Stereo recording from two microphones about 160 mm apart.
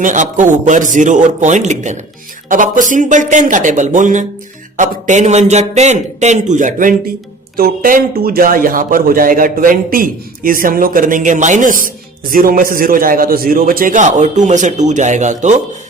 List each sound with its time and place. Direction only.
0.0 s a man's voice: 50° right (ahead or behind)
7.5 s speech: 65° right (ahead or behind); by 15.6 s 50° right (ahead or behind)